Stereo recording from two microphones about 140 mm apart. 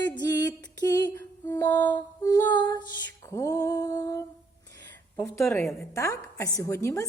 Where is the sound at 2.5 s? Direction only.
30° left (ahead or behind).